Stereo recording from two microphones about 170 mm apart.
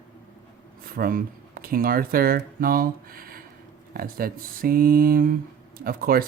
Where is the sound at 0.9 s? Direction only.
60° right (ahead or behind).